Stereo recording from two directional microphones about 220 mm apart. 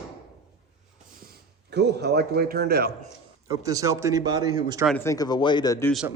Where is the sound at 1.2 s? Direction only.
50° right (ahead or behind).